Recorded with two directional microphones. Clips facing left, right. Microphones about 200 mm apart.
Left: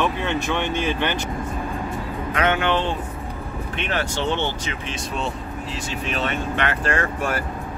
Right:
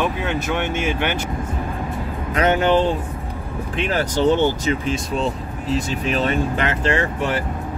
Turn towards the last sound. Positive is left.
turn(degrees=-25)  # may be behind; listen again after turning